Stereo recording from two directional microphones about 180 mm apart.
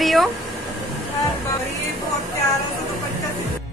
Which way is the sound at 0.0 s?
Centre (ahead or behind).